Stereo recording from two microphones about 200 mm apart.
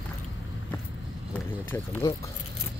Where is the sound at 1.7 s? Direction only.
10° left (ahead or behind).